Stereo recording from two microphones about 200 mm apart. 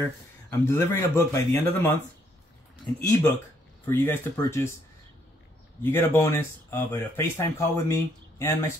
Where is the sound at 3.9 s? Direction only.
10° left (ahead or behind).